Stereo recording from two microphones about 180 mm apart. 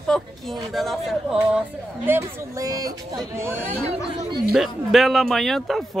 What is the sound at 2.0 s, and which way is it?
Speech, 15° right (ahead or behind).